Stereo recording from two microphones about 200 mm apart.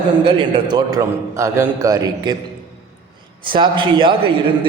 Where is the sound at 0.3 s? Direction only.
25° right (ahead or behind).